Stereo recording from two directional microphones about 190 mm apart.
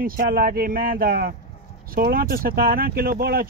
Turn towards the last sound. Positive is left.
turn(degrees=-50)  # may be behind; listen again after turning